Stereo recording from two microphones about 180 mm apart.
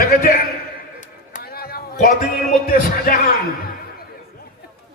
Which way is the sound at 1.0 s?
50° left (ahead or behind).